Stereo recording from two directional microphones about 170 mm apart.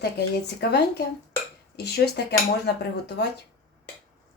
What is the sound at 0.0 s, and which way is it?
Speech, 75° left (ahead or behind).